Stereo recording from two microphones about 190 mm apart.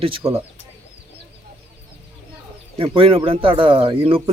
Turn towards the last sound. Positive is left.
turn(degrees=-30)  # may be behind; listen again after turning